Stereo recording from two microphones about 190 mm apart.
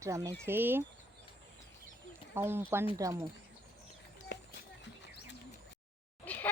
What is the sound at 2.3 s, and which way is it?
Speech, 10° right (ahead or behind).